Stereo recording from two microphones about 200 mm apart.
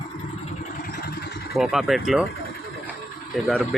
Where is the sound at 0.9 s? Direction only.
50° left (ahead or behind).